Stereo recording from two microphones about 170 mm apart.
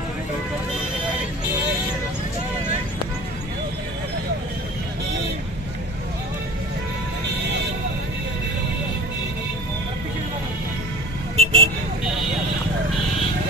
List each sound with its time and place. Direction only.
11.3 s vehicle: 35° right (ahead or behind)